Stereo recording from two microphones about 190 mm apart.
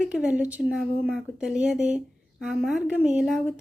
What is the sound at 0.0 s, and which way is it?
A woman's voice, 5° right (ahead or behind).